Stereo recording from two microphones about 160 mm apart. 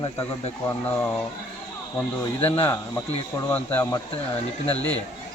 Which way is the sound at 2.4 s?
15° left (ahead or behind).